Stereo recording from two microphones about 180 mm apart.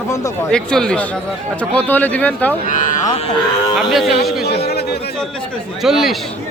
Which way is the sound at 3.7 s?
Centre (ahead or behind).